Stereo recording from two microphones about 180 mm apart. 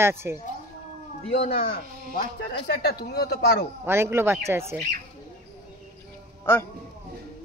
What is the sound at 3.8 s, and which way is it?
Speech, 15° right (ahead or behind).